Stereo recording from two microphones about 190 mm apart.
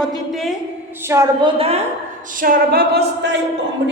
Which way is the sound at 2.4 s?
50° right (ahead or behind).